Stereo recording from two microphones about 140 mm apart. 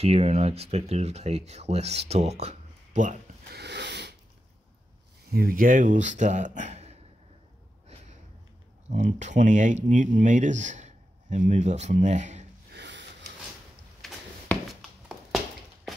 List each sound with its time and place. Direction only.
0.0 s speech: 50° right (ahead or behind)
5.3 s speech: 85° right; by 7.0 s 50° right (ahead or behind)
8.9 s speech: 60° right (ahead or behind)
14.0 s a sound: centre (ahead or behind)